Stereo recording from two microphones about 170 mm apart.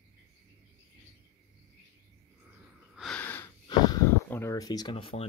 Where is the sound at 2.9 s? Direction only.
5° left (ahead or behind).